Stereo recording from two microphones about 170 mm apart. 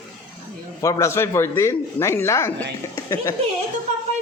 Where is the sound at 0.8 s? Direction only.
15° left (ahead or behind).